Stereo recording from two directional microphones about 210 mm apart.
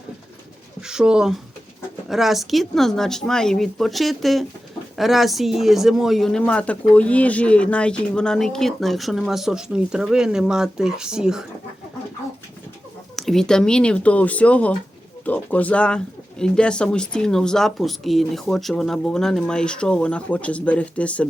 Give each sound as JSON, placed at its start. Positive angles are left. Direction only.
{"t": 0.8, "sound": "speech", "side_deg": -5}
{"t": 13.1, "sound": "speech", "side_deg": 0}